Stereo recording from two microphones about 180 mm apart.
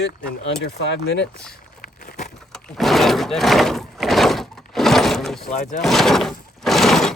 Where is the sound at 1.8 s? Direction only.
45° left (ahead or behind).